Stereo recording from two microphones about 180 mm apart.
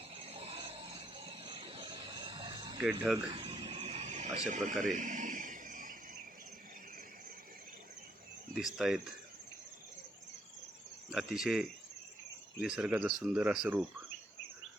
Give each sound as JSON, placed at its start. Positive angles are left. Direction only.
{"t": 0.1, "sound": "a sound", "side_deg": -35}
{"t": 8.5, "sound": "speech", "side_deg": 0}
{"t": 11.1, "sound": "speech", "side_deg": 0}